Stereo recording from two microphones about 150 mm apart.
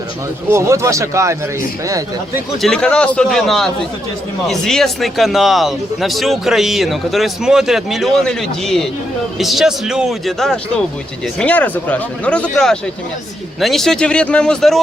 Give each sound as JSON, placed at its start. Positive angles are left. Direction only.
{"t": 0.5, "sound": "speech", "side_deg": -20}
{"t": 2.6, "sound": "speech", "side_deg": 5}